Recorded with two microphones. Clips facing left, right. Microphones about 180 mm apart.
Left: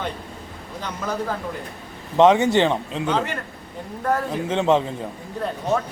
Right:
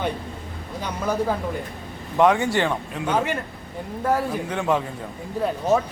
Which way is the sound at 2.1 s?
20° left (ahead or behind).